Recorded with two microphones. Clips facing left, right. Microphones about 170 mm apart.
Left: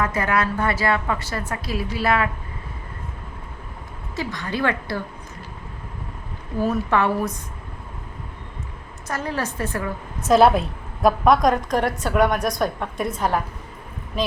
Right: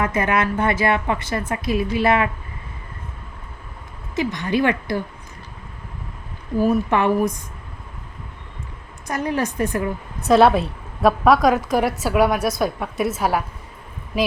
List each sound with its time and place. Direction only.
0.0 s a woman's voice: 20° right (ahead or behind)
4.1 s a woman's voice: 20° right (ahead or behind)
6.6 s a woman's voice: 15° right (ahead or behind)
9.0 s a woman's voice: 15° right (ahead or behind)
10.2 s a woman's voice: centre (ahead or behind)